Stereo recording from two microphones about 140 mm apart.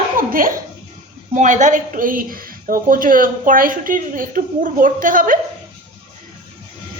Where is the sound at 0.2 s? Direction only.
90° right.